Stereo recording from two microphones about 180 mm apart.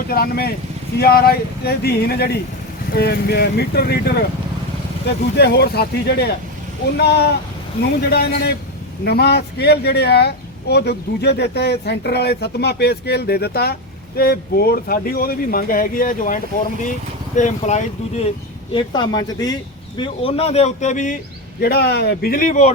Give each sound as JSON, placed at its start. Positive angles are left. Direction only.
{"t": 0.1, "sound": "speech", "side_deg": 60}
{"t": 18.7, "sound": "speech", "side_deg": 25}
{"t": 20.0, "sound": "speech", "side_deg": 30}
{"t": 21.6, "sound": "speech", "side_deg": 60}